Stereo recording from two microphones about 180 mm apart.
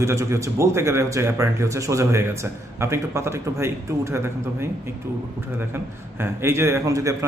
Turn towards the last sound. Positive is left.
turn(degrees=-15)  # may be behind; listen again after turning